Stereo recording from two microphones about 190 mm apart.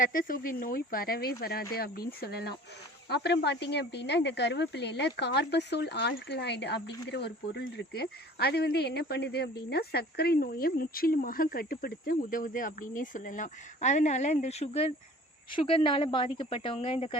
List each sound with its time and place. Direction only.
0.0 s speech: 45° left (ahead or behind); by 17.2 s 30° left (ahead or behind)